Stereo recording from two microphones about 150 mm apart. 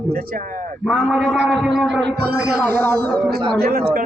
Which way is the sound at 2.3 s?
90° right.